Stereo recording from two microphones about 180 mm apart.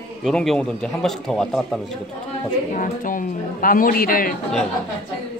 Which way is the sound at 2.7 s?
50° left (ahead or behind).